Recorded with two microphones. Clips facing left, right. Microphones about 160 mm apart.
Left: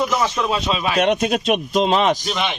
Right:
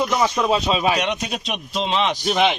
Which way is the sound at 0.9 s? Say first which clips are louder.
Left 7 dB; 50° left (ahead or behind).